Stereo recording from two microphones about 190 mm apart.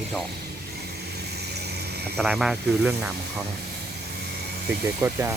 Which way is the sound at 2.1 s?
5° right (ahead or behind).